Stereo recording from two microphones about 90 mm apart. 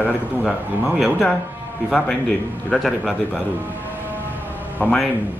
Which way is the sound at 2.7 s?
5° left (ahead or behind).